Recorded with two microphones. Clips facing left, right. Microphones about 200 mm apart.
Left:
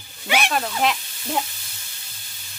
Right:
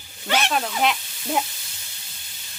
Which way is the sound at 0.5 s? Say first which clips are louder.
Even; centre (ahead or behind).